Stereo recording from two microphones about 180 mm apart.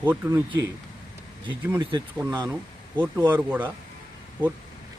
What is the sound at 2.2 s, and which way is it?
Speech, 20° right (ahead or behind).